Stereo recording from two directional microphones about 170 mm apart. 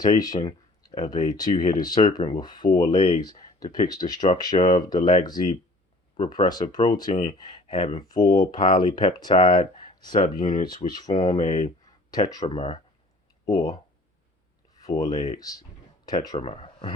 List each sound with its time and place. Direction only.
0.0 s speech: 25° left (ahead or behind)
14.8 s speech: 25° left (ahead or behind)